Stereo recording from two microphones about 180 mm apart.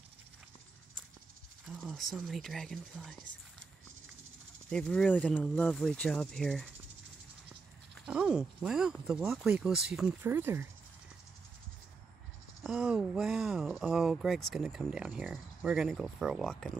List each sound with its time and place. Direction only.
1.7 s speech: centre (ahead or behind)
4.6 s speech: 5° left (ahead or behind); by 10.7 s 10° right (ahead or behind)
12.6 s speech: 5° right (ahead or behind)